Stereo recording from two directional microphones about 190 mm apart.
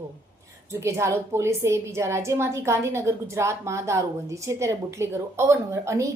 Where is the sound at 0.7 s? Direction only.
15° right (ahead or behind).